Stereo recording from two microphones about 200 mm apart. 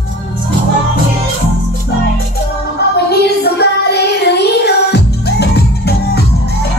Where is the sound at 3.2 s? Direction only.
55° left (ahead or behind).